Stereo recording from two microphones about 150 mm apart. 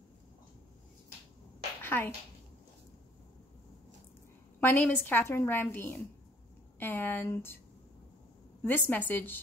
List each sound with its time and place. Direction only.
1.8 s a sound: 15° left (ahead or behind)
4.6 s a woman's voice: 10° left (ahead or behind)
8.6 s a woman's voice: 10° left (ahead or behind)